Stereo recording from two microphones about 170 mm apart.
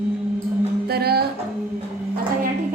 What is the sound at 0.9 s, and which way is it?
Music, 70° right (ahead or behind).